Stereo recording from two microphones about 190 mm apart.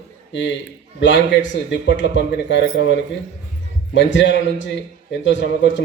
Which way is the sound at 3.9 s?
75° left (ahead or behind).